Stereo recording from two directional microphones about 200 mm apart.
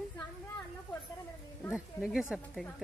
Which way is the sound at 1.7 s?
5° right (ahead or behind).